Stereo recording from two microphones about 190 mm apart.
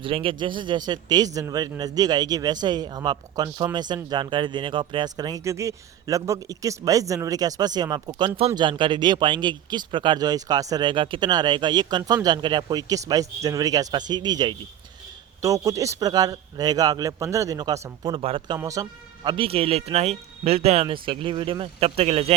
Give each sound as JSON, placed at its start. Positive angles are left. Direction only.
{"t": 0.0, "sound": "a man's voice", "side_deg": -30}